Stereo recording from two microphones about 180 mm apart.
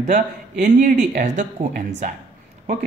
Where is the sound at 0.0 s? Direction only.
45° right (ahead or behind).